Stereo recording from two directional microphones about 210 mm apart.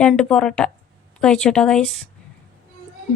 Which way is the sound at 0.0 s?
5° left (ahead or behind).